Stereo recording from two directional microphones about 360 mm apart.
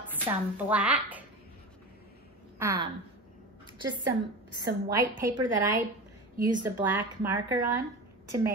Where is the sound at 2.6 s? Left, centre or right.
Centre.